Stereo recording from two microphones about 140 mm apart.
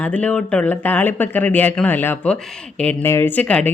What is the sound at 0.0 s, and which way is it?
Speech, 10° left (ahead or behind).